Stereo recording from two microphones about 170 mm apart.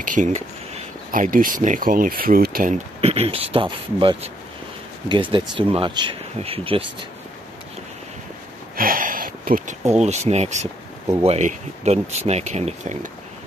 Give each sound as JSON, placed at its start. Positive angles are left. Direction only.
{"t": 0.0, "sound": "speech", "side_deg": -45}
{"t": 3.0, "sound": "speech", "side_deg": -35}
{"t": 8.7, "sound": "a sound", "side_deg": -55}
{"t": 9.8, "sound": "speech", "side_deg": -40}